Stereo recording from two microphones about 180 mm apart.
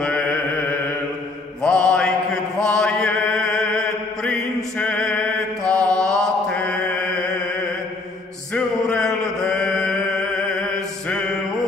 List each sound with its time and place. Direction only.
0.0 s chant: 10° left (ahead or behind)
1.6 s mantra: 5° left (ahead or behind)
4.7 s music: 5° left (ahead or behind)
5.7 s mantra: 20° right (ahead or behind)
6.0 s mantra: 5° left (ahead or behind)
8.5 s mantra: 5° left (ahead or behind)